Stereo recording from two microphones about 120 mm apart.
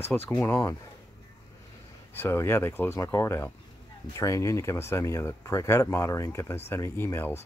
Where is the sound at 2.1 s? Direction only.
20° left (ahead or behind).